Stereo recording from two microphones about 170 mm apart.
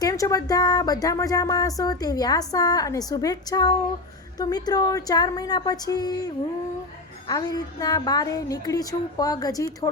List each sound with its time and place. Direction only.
0.0 s speech: 20° left (ahead or behind)